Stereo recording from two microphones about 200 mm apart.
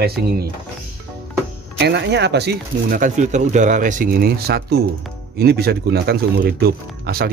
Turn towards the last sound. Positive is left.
turn(degrees=-50)  # may be behind; listen again after turning